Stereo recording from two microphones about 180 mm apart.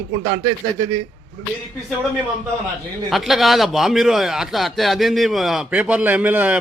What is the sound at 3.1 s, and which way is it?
Speech, centre (ahead or behind).